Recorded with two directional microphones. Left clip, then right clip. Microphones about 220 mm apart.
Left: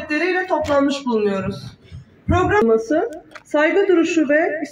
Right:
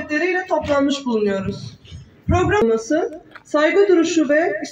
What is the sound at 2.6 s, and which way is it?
Speech, 15° right (ahead or behind).